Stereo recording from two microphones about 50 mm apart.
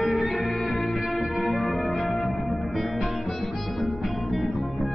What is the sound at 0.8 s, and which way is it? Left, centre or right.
Music, centre.